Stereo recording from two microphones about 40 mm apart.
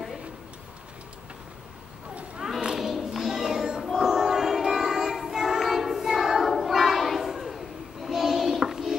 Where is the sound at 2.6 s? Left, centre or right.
Centre.